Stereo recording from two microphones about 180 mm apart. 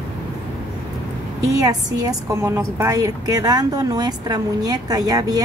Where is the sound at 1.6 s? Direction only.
20° right (ahead or behind).